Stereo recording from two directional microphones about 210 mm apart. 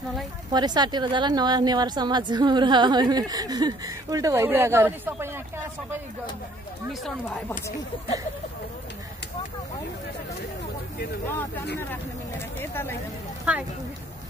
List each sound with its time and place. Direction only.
0.5 s a woman's voice: 20° right (ahead or behind)
6.9 s speech: centre (ahead or behind)
11.2 s speech: 10° left (ahead or behind)